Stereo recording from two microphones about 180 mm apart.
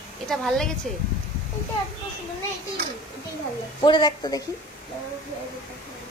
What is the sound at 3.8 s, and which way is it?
Speech, 25° left (ahead or behind).